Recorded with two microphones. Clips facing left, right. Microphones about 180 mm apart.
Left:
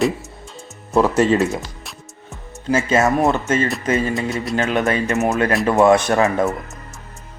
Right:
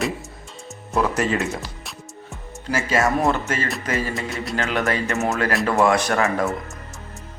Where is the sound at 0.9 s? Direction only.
30° left (ahead or behind).